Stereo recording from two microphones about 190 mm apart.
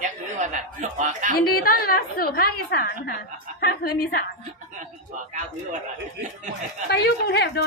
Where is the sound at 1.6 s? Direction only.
50° left (ahead or behind).